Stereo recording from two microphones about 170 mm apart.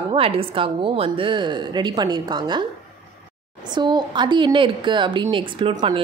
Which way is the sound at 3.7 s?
25° right (ahead or behind).